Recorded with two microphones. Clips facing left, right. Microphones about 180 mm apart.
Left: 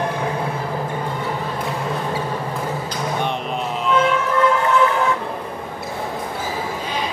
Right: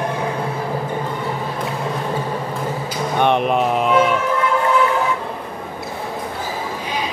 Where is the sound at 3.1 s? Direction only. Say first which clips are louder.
Right 11 dB; 65° right (ahead or behind).